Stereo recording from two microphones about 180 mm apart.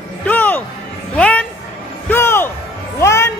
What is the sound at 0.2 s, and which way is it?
Music, 10° left (ahead or behind).